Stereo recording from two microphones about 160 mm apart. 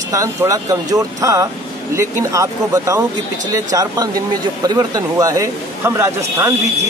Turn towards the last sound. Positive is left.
turn(degrees=-15)  # may be behind; listen again after turning